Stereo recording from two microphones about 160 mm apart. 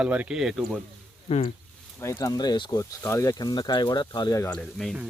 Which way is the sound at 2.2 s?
25° left (ahead or behind).